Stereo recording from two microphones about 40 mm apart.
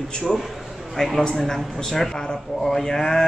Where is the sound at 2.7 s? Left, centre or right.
Centre.